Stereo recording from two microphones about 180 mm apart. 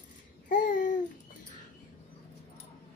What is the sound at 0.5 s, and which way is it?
Babbling, 45° left (ahead or behind).